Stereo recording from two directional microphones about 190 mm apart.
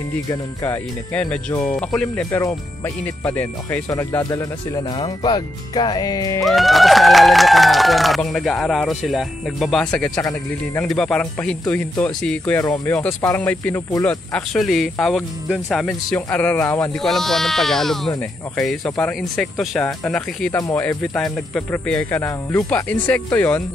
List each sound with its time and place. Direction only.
0.3 s speech: 10° left (ahead or behind)
3.3 s speech: 10° left (ahead or behind)
6.4 s speech: centre (ahead or behind)
17.0 s speech: centre (ahead or behind)
20.5 s speech: 15° left (ahead or behind)